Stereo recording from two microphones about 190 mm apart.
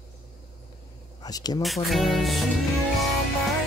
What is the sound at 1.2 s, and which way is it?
Speech, 20° left (ahead or behind).